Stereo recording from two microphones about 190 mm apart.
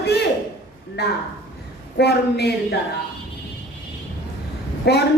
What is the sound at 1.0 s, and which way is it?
A woman's voice, 60° left (ahead or behind).